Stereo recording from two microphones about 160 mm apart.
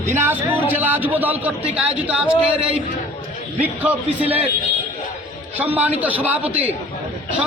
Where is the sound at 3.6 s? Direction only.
10° right (ahead or behind).